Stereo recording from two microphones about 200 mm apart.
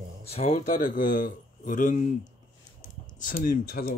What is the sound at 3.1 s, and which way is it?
Speech, 40° left (ahead or behind).